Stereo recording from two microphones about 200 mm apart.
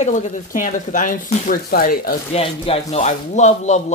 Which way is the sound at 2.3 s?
30° left (ahead or behind).